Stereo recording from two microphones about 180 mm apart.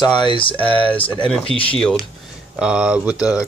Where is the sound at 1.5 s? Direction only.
30° left (ahead or behind).